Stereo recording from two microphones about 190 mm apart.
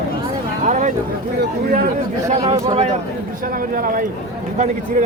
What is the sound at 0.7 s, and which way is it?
Speech, 40° right (ahead or behind).